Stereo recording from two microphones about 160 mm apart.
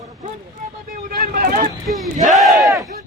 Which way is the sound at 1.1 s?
65° right (ahead or behind).